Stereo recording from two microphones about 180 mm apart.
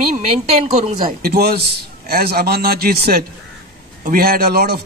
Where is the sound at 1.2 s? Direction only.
60° right (ahead or behind).